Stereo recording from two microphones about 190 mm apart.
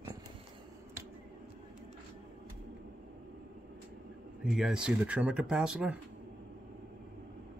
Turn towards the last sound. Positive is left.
turn(degrees=-5)  # may be behind; listen again after turning